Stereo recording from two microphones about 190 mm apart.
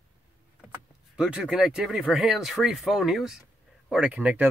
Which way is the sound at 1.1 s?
5° right (ahead or behind).